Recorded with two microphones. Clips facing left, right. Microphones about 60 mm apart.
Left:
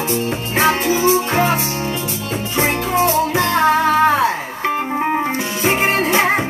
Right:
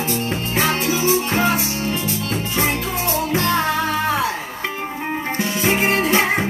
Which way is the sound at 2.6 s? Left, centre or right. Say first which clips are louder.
Left 7 dB; left.